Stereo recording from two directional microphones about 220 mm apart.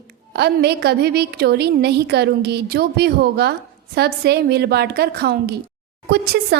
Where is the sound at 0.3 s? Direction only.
45° right (ahead or behind).